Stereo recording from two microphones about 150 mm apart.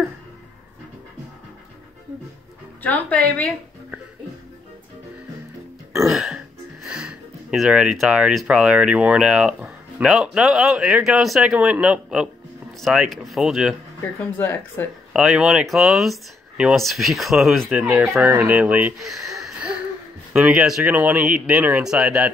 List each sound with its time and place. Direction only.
2.8 s a woman's voice: 10° left (ahead or behind)
6.0 s speech: centre (ahead or behind)
14.2 s a woman's voice: 15° left (ahead or behind)
15.1 s speech: 5° right (ahead or behind)
18.9 s a sound: centre (ahead or behind)
20.3 s speech: 5° right (ahead or behind)